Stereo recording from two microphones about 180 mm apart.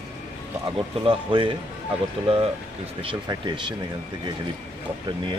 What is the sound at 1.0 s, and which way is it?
Speech, 30° right (ahead or behind).